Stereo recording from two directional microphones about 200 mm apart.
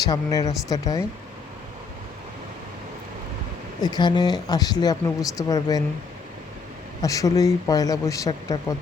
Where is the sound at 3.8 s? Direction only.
20° left (ahead or behind).